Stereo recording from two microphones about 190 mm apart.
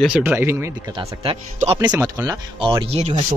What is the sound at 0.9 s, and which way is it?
Speech, 30° right (ahead or behind).